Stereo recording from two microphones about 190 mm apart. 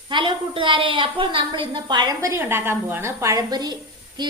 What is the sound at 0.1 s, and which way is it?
A woman's voice, 25° right (ahead or behind).